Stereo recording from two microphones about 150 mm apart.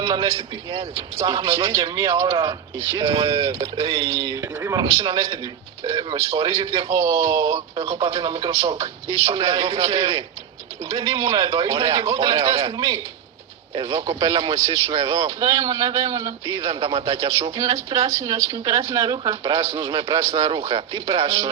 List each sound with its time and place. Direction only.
0.0 s a man's voice: 30° right (ahead or behind)
3.0 s a man's voice: 30° right (ahead or behind)